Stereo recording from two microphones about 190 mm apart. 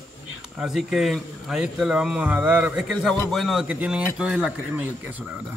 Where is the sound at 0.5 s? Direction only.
Centre (ahead or behind).